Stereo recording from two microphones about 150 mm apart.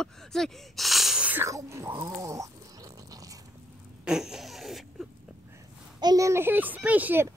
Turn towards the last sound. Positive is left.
turn(degrees=-15)  # may be behind; listen again after turning